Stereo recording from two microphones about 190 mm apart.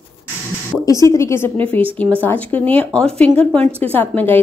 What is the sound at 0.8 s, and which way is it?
Speech, 15° left (ahead or behind).